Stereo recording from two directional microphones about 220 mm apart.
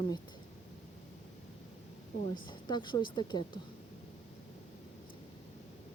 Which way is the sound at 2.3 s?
20° left (ahead or behind).